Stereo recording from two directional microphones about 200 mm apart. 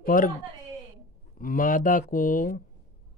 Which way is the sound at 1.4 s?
45° left (ahead or behind).